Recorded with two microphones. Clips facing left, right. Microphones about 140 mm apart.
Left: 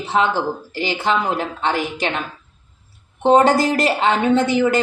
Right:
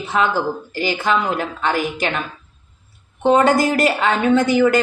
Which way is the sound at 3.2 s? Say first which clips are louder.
Left 1 dB; 30° left (ahead or behind).